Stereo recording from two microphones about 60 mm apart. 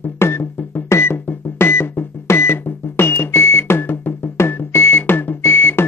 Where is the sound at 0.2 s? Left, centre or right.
Left.